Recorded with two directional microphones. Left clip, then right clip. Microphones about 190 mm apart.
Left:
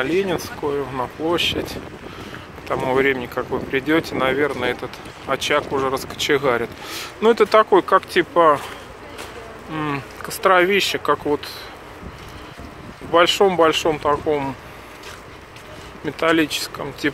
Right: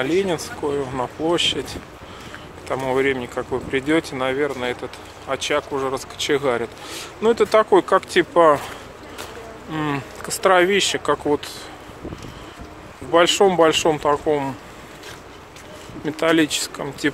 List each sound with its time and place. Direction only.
0.0 s speech: 15° right (ahead or behind)
2.7 s speech: 5° right (ahead or behind)
7.7 s speech: 20° right (ahead or behind)
9.7 s speech: 20° right (ahead or behind)
13.1 s speech: 15° right (ahead or behind)
16.1 s speech: 15° right (ahead or behind)